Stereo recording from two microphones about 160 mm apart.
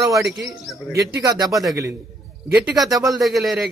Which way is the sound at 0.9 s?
20° right (ahead or behind).